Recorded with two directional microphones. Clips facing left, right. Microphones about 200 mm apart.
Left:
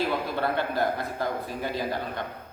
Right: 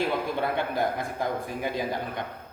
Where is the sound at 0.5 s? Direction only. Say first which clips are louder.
Left 1 dB; 15° right (ahead or behind).